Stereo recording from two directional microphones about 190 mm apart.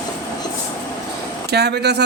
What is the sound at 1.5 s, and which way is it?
Speech, 60° right (ahead or behind).